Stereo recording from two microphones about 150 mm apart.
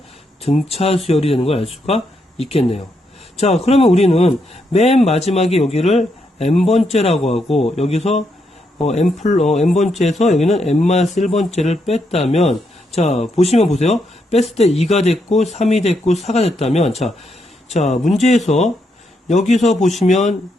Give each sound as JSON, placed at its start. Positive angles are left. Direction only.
{"t": 0.4, "sound": "speech", "side_deg": 40}
{"t": 9.5, "sound": "speech", "side_deg": 0}
{"t": 10.0, "sound": "speech", "side_deg": 50}